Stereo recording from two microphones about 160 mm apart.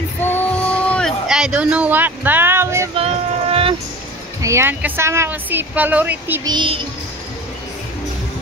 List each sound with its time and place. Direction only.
0.2 s music: 10° left (ahead or behind)
1.2 s music: 5° right (ahead or behind)
3.0 s a sound: 35° right (ahead or behind)
4.4 s a woman's voice: 15° right (ahead or behind)
6.4 s music: 30° right (ahead or behind)